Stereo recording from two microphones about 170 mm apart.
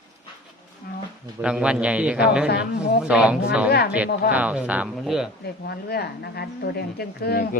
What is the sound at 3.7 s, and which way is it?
Speech, 70° left (ahead or behind).